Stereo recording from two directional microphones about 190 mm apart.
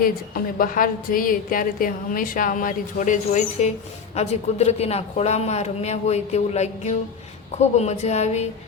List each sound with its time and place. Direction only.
0.0 s a woman's voice: 50° left (ahead or behind)